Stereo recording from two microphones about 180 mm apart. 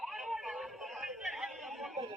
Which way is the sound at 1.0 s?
Centre (ahead or behind).